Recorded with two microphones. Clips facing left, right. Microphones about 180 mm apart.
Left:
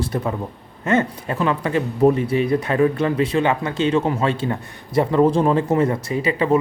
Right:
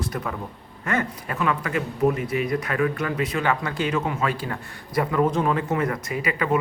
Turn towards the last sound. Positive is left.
turn(degrees=30)  # may be behind; listen again after turning